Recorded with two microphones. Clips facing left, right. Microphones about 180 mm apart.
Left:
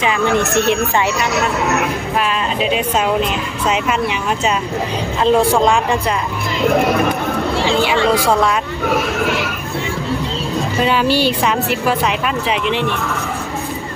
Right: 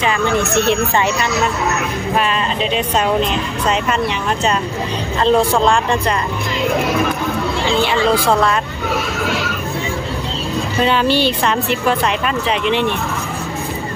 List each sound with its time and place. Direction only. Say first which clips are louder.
2.6 s speech: left 1 dB; 5° left (ahead or behind)
5.2 s speech: left 1 dB; 10° left (ahead or behind)
8.2 s speech: even; 10° left (ahead or behind)
8.8 s speech: left 6 dB; 55° left (ahead or behind)
10.8 s speech: even; 5° left (ahead or behind)